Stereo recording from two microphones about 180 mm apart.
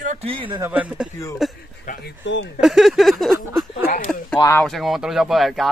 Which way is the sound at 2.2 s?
90° left.